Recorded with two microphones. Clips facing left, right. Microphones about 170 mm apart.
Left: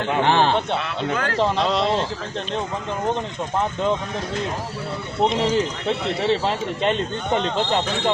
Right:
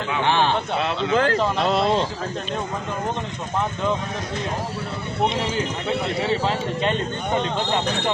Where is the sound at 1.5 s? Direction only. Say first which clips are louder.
Even; 5° right (ahead or behind).